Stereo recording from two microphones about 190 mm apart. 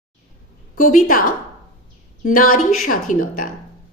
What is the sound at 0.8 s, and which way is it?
Speech, 45° left (ahead or behind).